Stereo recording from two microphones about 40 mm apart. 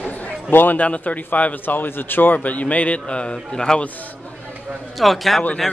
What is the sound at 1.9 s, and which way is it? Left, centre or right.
Speech, left.